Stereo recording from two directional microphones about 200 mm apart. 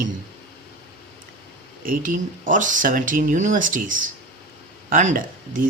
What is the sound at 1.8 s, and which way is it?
Speech, 40° right (ahead or behind).